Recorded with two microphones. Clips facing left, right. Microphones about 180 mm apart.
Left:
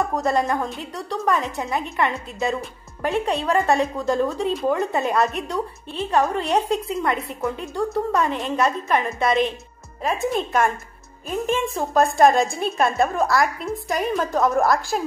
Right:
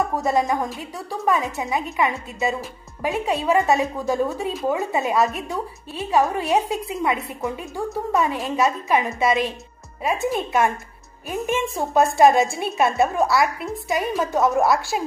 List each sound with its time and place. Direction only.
0.1 s a woman's voice: 5° right (ahead or behind)
7.4 s a woman's voice: 15° right (ahead or behind)
8.1 s a woman's voice: 5° right (ahead or behind)
11.9 s a woman's voice: 5° right (ahead or behind)